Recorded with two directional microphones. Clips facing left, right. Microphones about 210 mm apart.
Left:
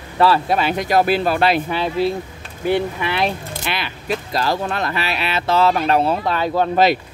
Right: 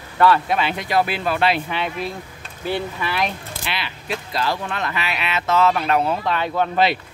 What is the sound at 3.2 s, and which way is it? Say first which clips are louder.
Speech: left 5 dB; 45° left (ahead or behind).